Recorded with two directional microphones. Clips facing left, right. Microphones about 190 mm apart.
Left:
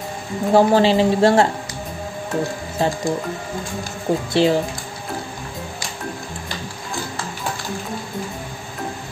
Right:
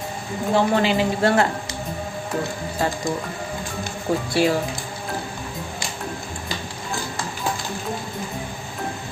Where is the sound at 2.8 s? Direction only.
25° left (ahead or behind).